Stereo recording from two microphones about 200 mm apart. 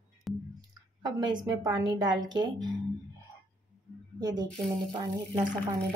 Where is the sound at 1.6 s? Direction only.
20° right (ahead or behind).